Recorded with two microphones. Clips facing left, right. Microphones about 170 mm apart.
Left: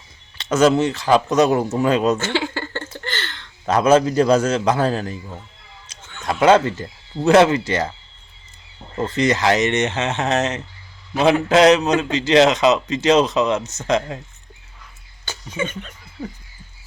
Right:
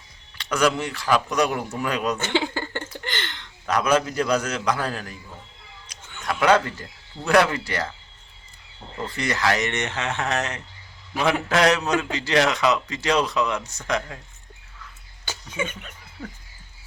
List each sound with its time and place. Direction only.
0.3 s speech: 25° left (ahead or behind)
2.1 s a sound: 15° right (ahead or behind)
3.7 s speech: 25° left (ahead or behind)
6.1 s speech: 25° left (ahead or behind)
9.0 s speech: 20° left (ahead or behind)
15.5 s speech: 10° right (ahead or behind)